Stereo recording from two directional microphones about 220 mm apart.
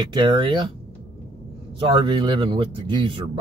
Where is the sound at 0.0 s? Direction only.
20° right (ahead or behind).